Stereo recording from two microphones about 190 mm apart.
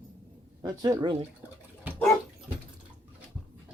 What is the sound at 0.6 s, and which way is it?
Speech, 20° right (ahead or behind).